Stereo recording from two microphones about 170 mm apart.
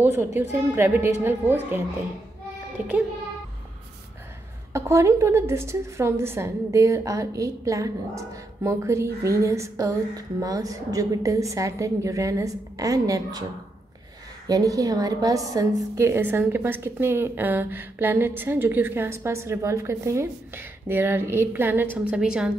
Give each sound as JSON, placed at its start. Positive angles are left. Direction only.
{"t": 0.0, "sound": "a woman's voice", "side_deg": -15}
{"t": 4.7, "sound": "a woman's voice", "side_deg": -15}
{"t": 14.5, "sound": "a woman's voice", "side_deg": -20}